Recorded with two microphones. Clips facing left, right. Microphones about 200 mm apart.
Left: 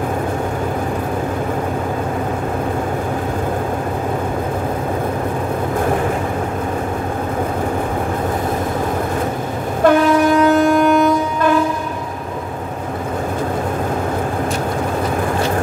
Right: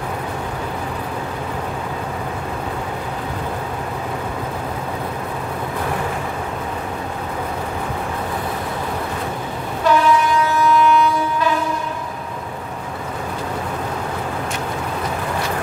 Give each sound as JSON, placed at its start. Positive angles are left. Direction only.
{"t": 9.8, "sound": "train", "side_deg": 50}